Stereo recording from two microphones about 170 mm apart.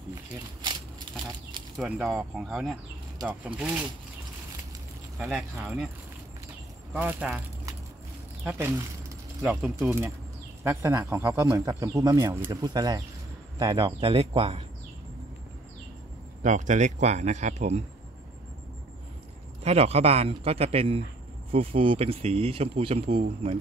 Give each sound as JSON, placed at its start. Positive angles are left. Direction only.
{"t": 0.7, "sound": "a sound", "side_deg": -25}
{"t": 1.8, "sound": "speech", "side_deg": -5}
{"t": 5.2, "sound": "speech", "side_deg": 0}
{"t": 6.9, "sound": "speech", "side_deg": -10}
{"t": 16.4, "sound": "speech", "side_deg": -45}
{"t": 19.6, "sound": "speech", "side_deg": -40}